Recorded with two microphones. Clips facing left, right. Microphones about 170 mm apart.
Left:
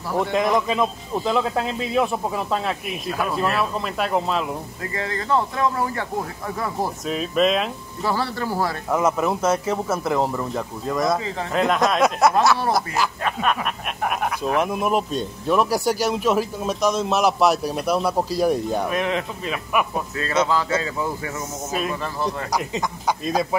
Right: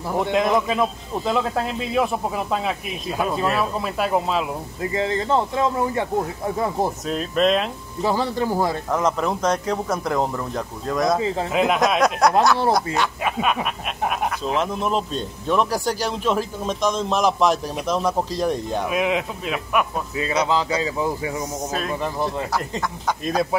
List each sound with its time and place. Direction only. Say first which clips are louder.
0.1 s speech: even; 20° right (ahead or behind)
0.4 s a man's voice: right 1 dB; centre (ahead or behind)
4.9 s speech: right 2 dB; 25° right (ahead or behind)
7.1 s a man's voice: left 1 dB; centre (ahead or behind)
8.0 s speech: right 3 dB; 15° right (ahead or behind)
8.9 s a man's voice: left 4 dB; 10° left (ahead or behind)
11.1 s speech: right 4 dB; 25° right (ahead or behind)
11.5 s a man's voice: left 1 dB; 5° right (ahead or behind)
14.6 s speech: left 2 dB; 10° left (ahead or behind)
18.9 s a man's voice: right 1 dB; 5° right (ahead or behind)
20.2 s speech: even; 15° right (ahead or behind)
22.5 s speech: left 1 dB; 15° left (ahead or behind)